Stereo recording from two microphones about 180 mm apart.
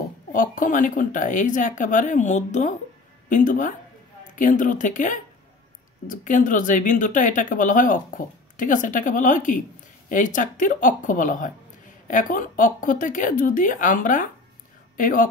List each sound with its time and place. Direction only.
0.3 s speech: 50° left (ahead or behind)